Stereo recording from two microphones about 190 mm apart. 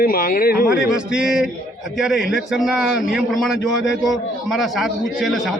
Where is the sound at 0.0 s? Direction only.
50° left (ahead or behind).